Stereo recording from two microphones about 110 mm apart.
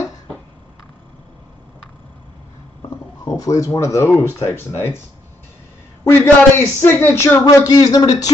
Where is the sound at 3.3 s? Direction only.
30° left (ahead or behind).